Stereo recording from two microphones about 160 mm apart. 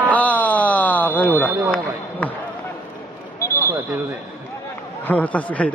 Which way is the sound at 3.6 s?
15° right (ahead or behind).